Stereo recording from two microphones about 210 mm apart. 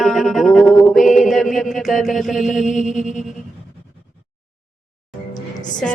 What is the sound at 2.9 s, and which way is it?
Music, 35° left (ahead or behind).